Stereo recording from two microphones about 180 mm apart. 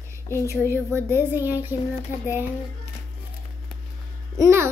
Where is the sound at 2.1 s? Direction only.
45° left (ahead or behind).